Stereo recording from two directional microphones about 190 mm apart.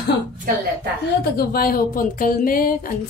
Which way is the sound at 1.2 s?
55° left (ahead or behind).